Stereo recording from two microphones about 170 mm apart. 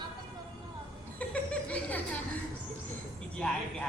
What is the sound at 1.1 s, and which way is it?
Chuckle, 10° left (ahead or behind).